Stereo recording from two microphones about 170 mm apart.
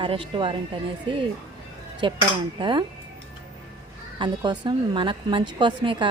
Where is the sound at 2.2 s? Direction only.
30° right (ahead or behind).